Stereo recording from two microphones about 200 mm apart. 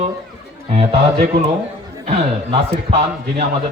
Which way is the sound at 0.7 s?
30° right (ahead or behind).